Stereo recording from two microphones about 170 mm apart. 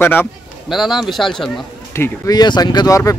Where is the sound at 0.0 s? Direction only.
10° left (ahead or behind).